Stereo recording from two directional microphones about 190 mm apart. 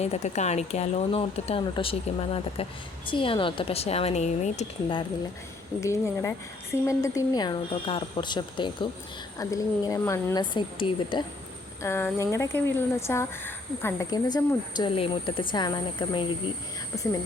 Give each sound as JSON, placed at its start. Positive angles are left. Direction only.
{"t": 0.0, "sound": "speech", "side_deg": 35}
{"t": 5.8, "sound": "a woman's voice", "side_deg": 15}
{"t": 11.8, "sound": "a woman's voice", "side_deg": 15}